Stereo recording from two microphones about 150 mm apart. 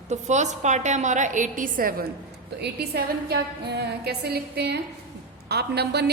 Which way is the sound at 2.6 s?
90° right.